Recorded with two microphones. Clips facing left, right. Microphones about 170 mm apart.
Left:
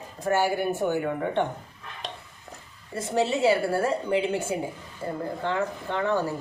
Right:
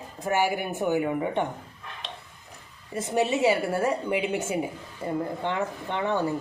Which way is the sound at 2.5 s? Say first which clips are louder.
Left 6 dB; 50° left (ahead or behind).